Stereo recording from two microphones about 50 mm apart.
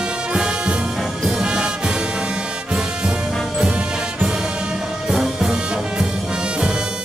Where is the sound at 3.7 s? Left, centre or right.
Centre.